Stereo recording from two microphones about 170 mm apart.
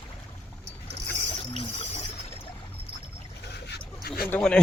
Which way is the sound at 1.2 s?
30° left (ahead or behind).